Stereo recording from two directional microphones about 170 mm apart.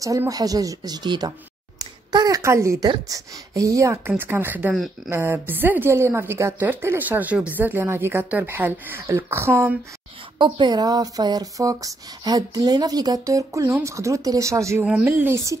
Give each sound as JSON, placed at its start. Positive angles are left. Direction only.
{"t": 0.0, "sound": "a woman's voice", "side_deg": -20}
{"t": 4.7, "sound": "speech", "side_deg": 0}
{"t": 5.1, "sound": "a woman's voice", "side_deg": -10}
{"t": 10.4, "sound": "a woman's voice", "side_deg": -25}